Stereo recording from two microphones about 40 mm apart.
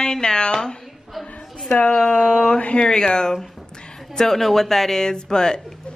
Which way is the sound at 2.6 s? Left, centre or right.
Left.